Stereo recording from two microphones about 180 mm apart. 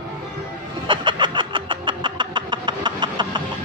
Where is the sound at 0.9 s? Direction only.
25° right (ahead or behind).